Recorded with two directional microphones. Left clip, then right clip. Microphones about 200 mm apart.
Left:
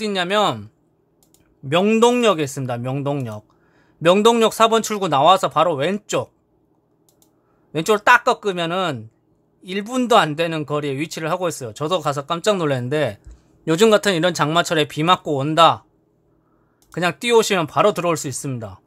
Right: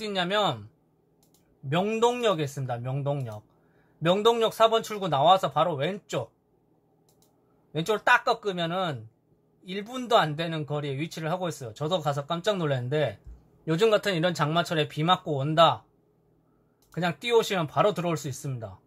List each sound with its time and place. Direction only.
0.0 s speech: 35° left (ahead or behind)
1.7 s speech: 40° left (ahead or behind)
7.7 s speech: 35° left (ahead or behind)
16.9 s speech: 35° left (ahead or behind)